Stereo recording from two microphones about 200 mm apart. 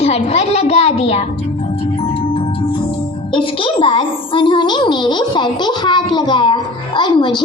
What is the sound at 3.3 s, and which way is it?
A woman's voice, 25° left (ahead or behind).